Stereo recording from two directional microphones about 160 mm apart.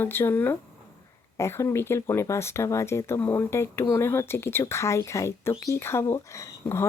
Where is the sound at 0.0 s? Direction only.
15° left (ahead or behind).